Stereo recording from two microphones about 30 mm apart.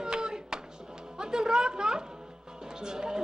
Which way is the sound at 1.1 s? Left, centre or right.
Right.